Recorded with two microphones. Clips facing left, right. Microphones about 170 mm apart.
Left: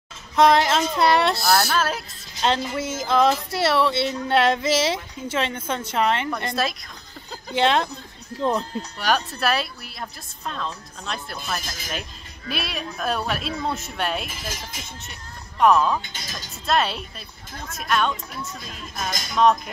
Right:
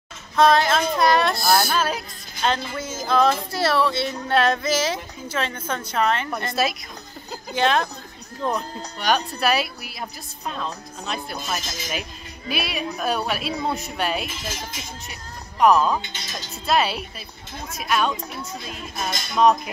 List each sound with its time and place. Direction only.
0.4 s female singing: 20° left (ahead or behind)
1.4 s a woman's voice: centre (ahead or behind)
2.6 s female singing: 25° left (ahead or behind)
6.6 s a woman's voice: 5° right (ahead or behind)
7.5 s female singing: 20° left (ahead or behind)
9.0 s a woman's voice: centre (ahead or behind)
15.6 s a woman's voice: centre (ahead or behind)
18.1 s speech: 20° right (ahead or behind)
18.7 s a woman's voice: 5° right (ahead or behind)